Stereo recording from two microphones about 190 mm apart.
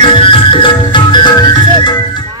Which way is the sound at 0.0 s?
25° left (ahead or behind).